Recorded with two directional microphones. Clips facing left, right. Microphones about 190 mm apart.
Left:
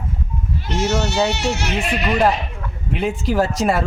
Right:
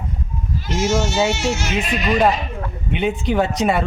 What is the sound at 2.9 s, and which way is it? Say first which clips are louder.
Speech: right 1 dB; centre (ahead or behind).